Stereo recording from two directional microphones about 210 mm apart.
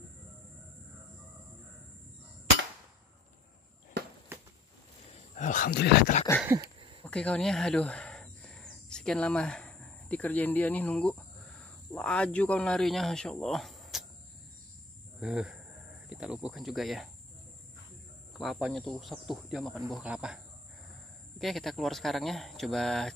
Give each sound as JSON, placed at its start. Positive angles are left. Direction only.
{"t": 4.3, "sound": "a sound", "side_deg": -10}
{"t": 5.1, "sound": "speech", "side_deg": 35}
{"t": 7.1, "sound": "speech", "side_deg": 5}
{"t": 15.1, "sound": "speech", "side_deg": -5}
{"t": 18.4, "sound": "speech", "side_deg": 0}
{"t": 21.4, "sound": "speech", "side_deg": 0}